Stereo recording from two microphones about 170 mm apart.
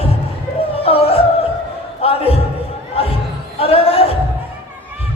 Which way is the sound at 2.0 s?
35° left (ahead or behind).